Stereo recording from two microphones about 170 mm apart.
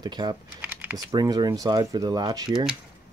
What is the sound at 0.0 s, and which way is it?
Speech, 25° right (ahead or behind).